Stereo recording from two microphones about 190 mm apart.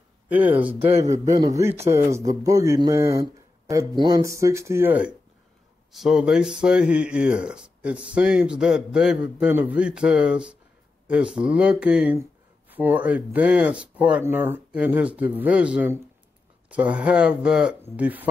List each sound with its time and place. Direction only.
0.3 s speech: 10° right (ahead or behind)
0.9 s a man's voice: 35° right (ahead or behind)
1.6 s speech: 15° right (ahead or behind)